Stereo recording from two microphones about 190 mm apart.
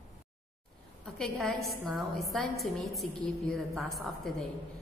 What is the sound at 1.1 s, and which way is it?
A woman's voice, centre (ahead or behind).